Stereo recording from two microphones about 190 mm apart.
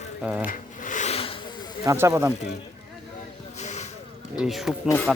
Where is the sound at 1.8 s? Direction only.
15° right (ahead or behind).